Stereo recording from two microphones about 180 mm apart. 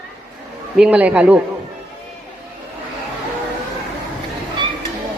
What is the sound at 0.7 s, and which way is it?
Speech, 5° right (ahead or behind).